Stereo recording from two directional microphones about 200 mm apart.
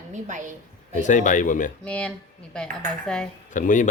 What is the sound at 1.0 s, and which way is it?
Speech, 40° left (ahead or behind).